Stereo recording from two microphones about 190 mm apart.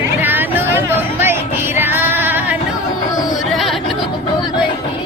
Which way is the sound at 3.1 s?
20° left (ahead or behind).